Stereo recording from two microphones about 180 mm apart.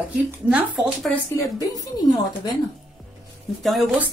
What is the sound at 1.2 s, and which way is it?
Speech, 15° left (ahead or behind).